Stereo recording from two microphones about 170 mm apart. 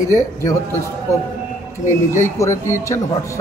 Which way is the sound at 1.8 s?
15° left (ahead or behind).